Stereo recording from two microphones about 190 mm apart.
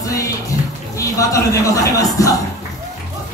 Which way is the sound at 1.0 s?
15° left (ahead or behind).